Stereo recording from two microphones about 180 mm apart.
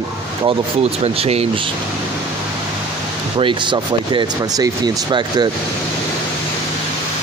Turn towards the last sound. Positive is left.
turn(degrees=-25)  # may be behind; listen again after turning